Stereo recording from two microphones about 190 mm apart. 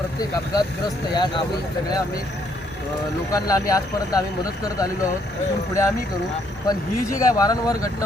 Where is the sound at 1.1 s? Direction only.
20° left (ahead or behind).